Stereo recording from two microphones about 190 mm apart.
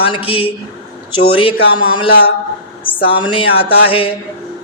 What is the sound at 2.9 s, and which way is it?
Speech, 25° left (ahead or behind).